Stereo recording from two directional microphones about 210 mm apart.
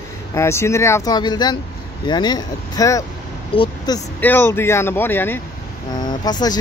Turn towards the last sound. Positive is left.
turn(degrees=20)  # may be behind; listen again after turning